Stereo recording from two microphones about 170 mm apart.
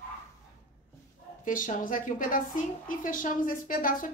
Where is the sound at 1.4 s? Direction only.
50° left (ahead or behind).